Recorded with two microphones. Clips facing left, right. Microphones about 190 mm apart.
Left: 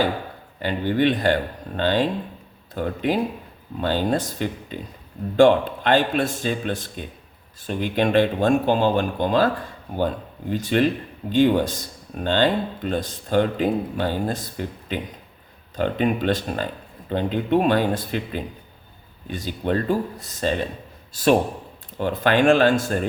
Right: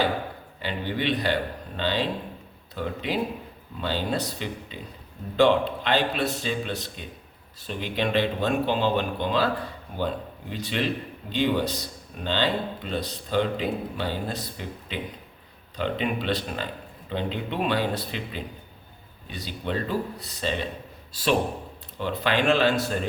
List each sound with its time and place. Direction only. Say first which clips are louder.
0.6 s speech: left 8 dB; 50° left (ahead or behind)
10.5 s a man's voice: left 8 dB; 45° left (ahead or behind)